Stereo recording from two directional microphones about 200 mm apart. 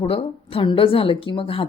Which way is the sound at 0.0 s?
30° left (ahead or behind).